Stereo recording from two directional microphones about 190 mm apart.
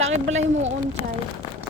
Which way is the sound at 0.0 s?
35° right (ahead or behind).